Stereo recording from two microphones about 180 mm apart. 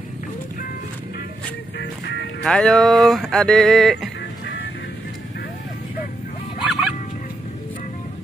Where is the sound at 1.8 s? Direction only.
70° left (ahead or behind).